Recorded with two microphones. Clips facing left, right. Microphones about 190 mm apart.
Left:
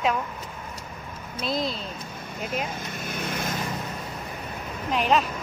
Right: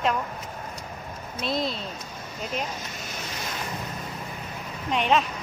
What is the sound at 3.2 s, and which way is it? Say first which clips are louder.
Vehicle: left 7 dB; 55° left (ahead or behind).